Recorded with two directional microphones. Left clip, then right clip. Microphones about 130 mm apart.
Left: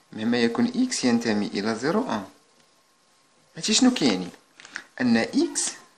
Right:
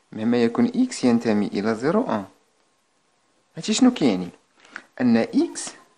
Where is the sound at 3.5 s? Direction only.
50° right (ahead or behind).